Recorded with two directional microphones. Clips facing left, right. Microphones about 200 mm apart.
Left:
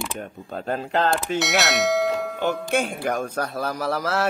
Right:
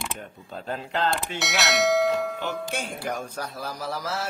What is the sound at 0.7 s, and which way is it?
Speech, 50° left (ahead or behind).